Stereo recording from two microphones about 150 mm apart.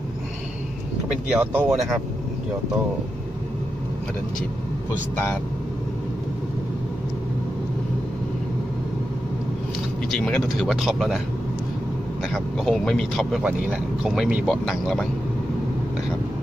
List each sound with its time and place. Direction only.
1.3 s speech: 10° right (ahead or behind)
10.0 s speech: 5° left (ahead or behind)
12.3 s speech: centre (ahead or behind)